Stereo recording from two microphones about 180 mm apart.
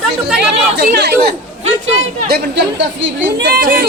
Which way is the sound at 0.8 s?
65° right (ahead or behind).